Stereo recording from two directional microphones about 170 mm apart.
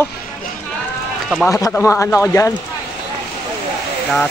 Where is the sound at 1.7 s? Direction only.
15° left (ahead or behind).